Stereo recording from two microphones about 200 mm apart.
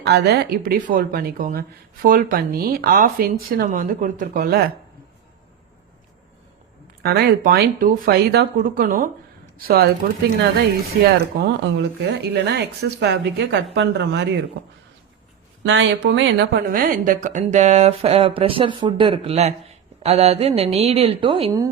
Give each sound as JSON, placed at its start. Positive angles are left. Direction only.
{"t": 0.0, "sound": "speech", "side_deg": -55}
{"t": 7.0, "sound": "speech", "side_deg": -50}
{"t": 11.0, "sound": "a woman's voice", "side_deg": -55}
{"t": 15.6, "sound": "a woman's voice", "side_deg": -70}